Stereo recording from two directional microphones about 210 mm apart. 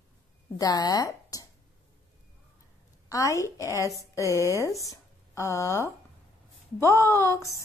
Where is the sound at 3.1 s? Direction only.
15° left (ahead or behind).